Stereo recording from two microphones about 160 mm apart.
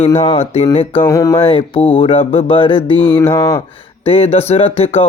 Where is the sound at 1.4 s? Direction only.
30° left (ahead or behind).